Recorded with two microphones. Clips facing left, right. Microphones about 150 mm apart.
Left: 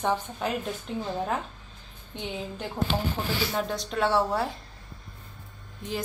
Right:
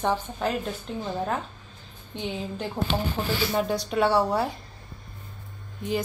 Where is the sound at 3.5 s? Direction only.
5° right (ahead or behind).